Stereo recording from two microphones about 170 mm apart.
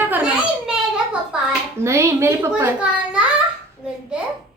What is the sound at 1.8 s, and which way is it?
A woman's voice, 15° right (ahead or behind).